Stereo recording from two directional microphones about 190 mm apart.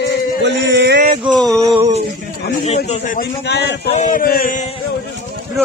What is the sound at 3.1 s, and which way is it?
Speech, 60° left (ahead or behind).